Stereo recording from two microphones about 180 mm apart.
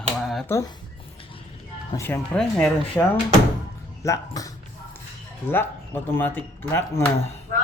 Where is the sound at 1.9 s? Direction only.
15° left (ahead or behind).